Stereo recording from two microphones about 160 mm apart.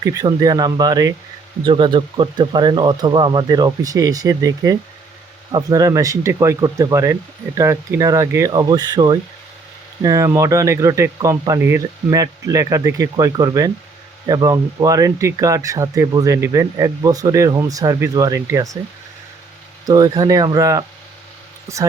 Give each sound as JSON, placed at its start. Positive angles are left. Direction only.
{"t": 0.0, "sound": "speech", "side_deg": -20}
{"t": 19.8, "sound": "speech", "side_deg": -25}